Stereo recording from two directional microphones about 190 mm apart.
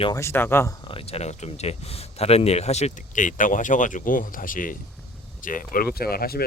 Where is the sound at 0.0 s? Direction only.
15° left (ahead or behind).